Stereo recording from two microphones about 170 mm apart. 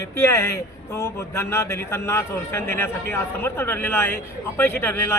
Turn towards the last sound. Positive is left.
turn(degrees=10)  # may be behind; listen again after turning